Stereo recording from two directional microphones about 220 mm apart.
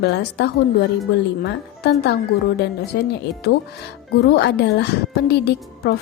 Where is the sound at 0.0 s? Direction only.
50° left (ahead or behind).